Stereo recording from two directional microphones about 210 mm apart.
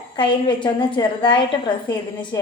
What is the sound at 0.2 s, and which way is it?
A woman's voice, 20° left (ahead or behind).